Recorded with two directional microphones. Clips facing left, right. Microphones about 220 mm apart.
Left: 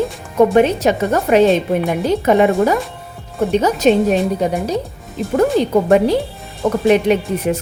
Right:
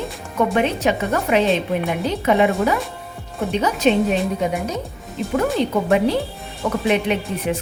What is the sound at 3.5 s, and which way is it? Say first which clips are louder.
A woman's voice: left 4 dB; 45° left (ahead or behind).